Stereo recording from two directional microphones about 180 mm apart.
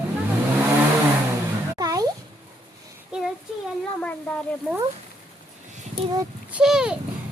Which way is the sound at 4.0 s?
10° left (ahead or behind).